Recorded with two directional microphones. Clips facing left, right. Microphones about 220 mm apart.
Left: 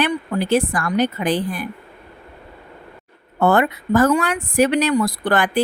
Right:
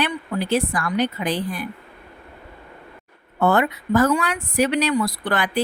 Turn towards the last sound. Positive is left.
turn(degrees=50)  # may be behind; listen again after turning